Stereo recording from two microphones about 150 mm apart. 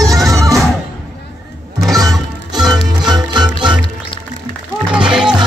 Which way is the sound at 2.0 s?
25° right (ahead or behind).